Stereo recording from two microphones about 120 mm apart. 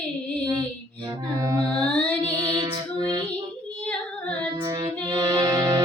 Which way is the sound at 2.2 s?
35° right (ahead or behind).